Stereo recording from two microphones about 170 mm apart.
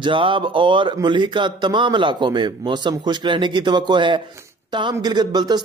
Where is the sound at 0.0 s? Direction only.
30° right (ahead or behind).